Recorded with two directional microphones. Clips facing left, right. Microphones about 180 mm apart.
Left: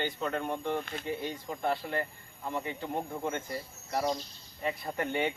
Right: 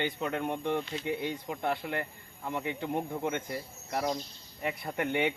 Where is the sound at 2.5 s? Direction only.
20° right (ahead or behind).